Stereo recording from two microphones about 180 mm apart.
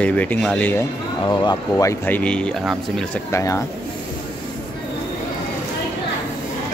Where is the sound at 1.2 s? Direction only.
25° left (ahead or behind); by 3.2 s centre (ahead or behind).